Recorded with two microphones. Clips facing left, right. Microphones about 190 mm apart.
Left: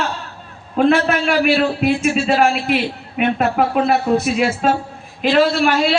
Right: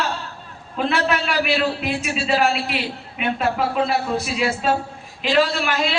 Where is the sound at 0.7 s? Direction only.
50° left (ahead or behind).